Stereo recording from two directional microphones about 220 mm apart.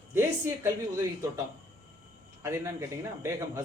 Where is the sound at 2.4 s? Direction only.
15° right (ahead or behind).